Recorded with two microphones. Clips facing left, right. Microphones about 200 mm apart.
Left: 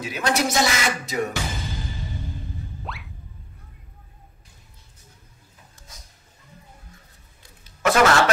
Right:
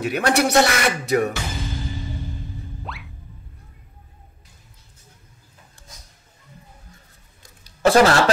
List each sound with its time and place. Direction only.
0.0 s speech: 65° right (ahead or behind)
2.8 s music: centre (ahead or behind)
7.4 s a sound: 35° right (ahead or behind)